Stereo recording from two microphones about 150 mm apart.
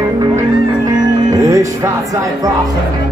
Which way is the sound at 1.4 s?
20° right (ahead or behind).